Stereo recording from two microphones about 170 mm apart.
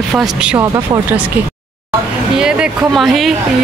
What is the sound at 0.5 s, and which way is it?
Speech, 25° right (ahead or behind).